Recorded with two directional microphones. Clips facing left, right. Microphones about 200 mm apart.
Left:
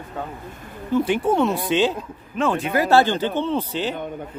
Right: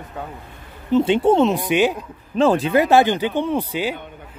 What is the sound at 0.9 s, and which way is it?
Speech, 25° right (ahead or behind).